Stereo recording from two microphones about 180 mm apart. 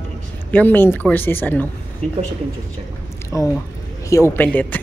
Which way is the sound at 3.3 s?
15° left (ahead or behind).